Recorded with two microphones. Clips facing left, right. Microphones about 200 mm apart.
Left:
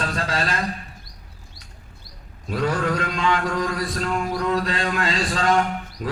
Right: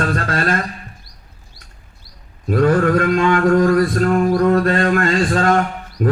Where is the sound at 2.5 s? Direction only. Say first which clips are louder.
Right 9 dB; 55° right (ahead or behind).